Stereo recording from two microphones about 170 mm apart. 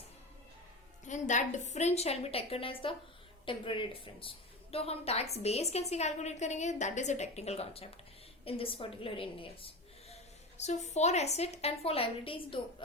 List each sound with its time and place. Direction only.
1.0 s a woman's voice: 45° left (ahead or behind)
10.6 s a woman's voice: 40° left (ahead or behind)